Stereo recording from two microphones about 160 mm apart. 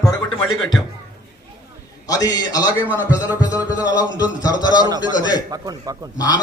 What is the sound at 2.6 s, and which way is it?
Speech, 10° right (ahead or behind).